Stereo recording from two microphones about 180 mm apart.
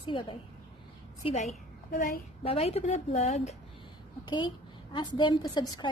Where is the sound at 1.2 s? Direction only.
30° left (ahead or behind).